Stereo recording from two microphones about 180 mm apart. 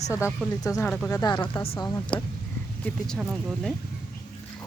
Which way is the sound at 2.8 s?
10° left (ahead or behind).